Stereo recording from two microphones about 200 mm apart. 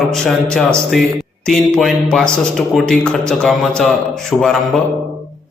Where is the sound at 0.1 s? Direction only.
Centre (ahead or behind).